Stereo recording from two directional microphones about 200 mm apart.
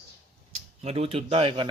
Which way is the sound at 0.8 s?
30° right (ahead or behind).